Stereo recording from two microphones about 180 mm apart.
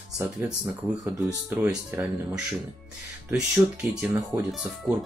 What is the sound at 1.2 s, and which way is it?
Speech, 5° right (ahead or behind).